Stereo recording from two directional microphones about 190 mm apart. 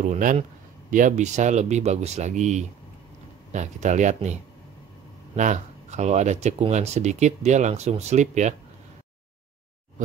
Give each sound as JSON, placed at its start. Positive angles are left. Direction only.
{"t": 0.0, "sound": "speech", "side_deg": -40}